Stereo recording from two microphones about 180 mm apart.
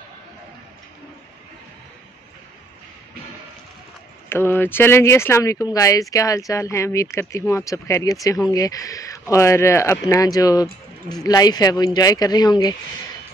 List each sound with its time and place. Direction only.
4.3 s speech: 10° left (ahead or behind)